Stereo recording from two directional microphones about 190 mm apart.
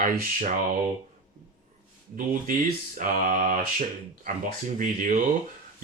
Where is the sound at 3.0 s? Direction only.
45° right (ahead or behind).